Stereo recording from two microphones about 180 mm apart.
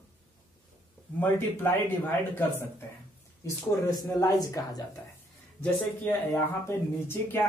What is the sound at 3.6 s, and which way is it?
A man's voice, 20° left (ahead or behind).